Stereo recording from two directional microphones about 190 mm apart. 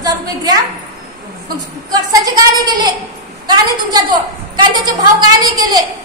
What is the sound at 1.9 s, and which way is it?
A woman's voice, 20° right (ahead or behind).